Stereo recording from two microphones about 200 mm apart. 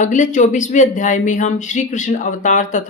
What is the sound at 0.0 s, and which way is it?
Speech, 40° left (ahead or behind).